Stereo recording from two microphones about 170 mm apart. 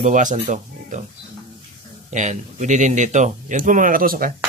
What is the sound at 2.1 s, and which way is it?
Speech, 45° right (ahead or behind).